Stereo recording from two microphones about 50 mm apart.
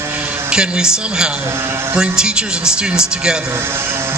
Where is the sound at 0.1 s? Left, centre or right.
Right.